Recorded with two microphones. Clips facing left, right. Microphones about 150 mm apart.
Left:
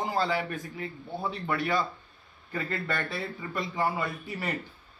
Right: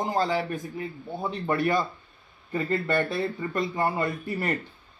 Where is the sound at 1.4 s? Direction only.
50° right (ahead or behind).